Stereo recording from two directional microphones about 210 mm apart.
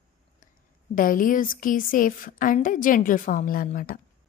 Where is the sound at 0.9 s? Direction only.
40° left (ahead or behind).